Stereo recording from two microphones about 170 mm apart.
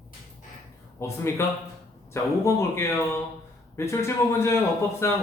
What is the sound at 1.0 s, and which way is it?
Speech, 15° left (ahead or behind).